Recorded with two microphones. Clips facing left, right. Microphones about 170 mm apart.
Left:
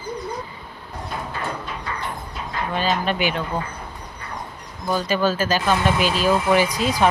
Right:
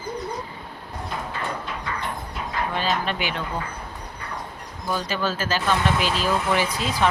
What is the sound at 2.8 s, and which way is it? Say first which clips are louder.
Speech: left 5 dB; 15° left (ahead or behind).